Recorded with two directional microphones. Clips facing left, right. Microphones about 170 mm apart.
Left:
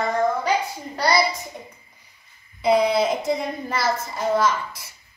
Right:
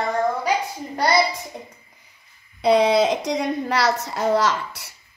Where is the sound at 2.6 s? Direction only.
75° right (ahead or behind).